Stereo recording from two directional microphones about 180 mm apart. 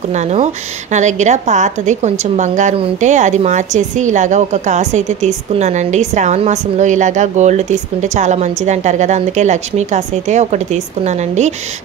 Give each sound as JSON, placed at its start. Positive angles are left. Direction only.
{"t": 0.1, "sound": "a woman's voice", "side_deg": -40}